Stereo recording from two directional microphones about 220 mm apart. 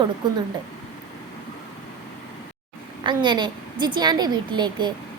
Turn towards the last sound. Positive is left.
turn(degrees=-20)  # may be behind; listen again after turning